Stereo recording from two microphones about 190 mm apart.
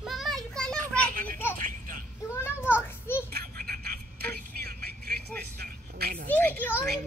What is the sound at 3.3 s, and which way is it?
Vehicle, 55° right (ahead or behind).